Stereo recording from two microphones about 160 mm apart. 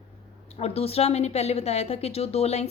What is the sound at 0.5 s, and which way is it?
A woman's voice, 40° left (ahead or behind).